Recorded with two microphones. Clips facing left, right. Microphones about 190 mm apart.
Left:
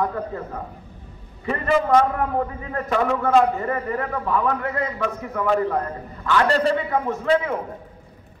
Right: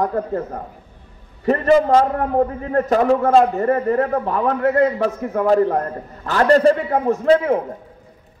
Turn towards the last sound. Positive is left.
turn(degrees=-40)  # may be behind; listen again after turning